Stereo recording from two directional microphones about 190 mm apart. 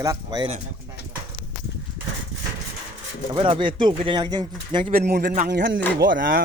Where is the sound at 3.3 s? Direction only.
25° right (ahead or behind).